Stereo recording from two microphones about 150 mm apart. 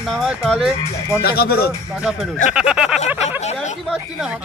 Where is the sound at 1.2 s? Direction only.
90° left.